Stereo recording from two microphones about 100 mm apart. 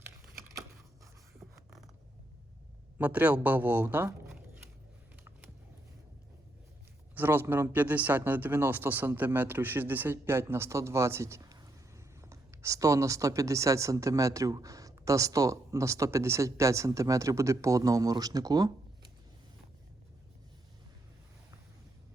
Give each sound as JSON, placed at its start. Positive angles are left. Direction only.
{"t": 3.0, "sound": "speech", "side_deg": -15}
{"t": 7.2, "sound": "speech", "side_deg": -20}